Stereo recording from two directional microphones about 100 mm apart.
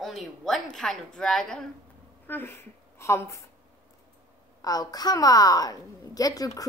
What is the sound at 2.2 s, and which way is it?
A woman's voice, 25° left (ahead or behind).